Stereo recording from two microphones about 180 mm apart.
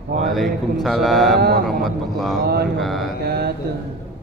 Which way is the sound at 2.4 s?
60° right (ahead or behind).